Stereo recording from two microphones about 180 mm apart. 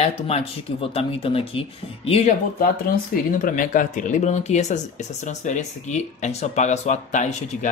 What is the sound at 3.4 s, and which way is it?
Speech, 50° left (ahead or behind).